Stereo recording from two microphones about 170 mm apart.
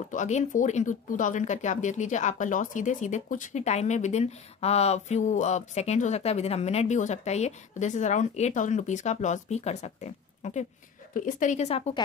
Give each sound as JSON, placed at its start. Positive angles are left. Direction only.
{"t": 0.1, "sound": "speech", "side_deg": 45}